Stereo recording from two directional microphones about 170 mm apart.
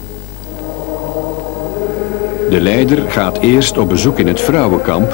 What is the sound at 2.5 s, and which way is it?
Speech, 10° left (ahead or behind).